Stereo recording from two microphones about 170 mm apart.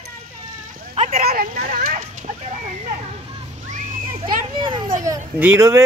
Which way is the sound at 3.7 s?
50° right (ahead or behind).